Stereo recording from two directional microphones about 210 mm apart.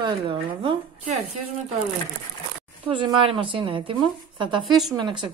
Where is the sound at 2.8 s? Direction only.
25° right (ahead or behind).